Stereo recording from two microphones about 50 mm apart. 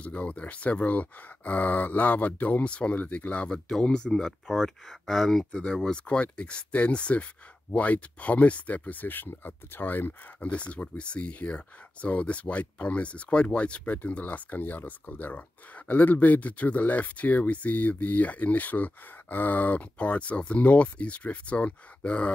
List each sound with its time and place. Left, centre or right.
0.0 s speech: left
3.4 s speech: centre
5.5 s speech: left
10.5 s speech: left